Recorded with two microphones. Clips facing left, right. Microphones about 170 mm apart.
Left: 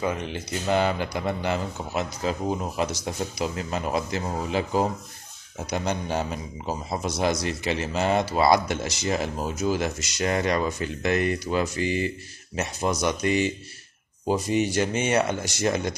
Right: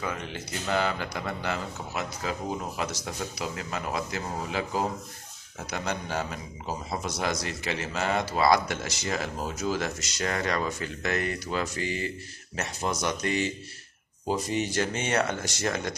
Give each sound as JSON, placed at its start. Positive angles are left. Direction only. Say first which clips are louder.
{"t": 0.0, "sound": "a man's voice", "louder": "left 6 dB", "side_deg": 20}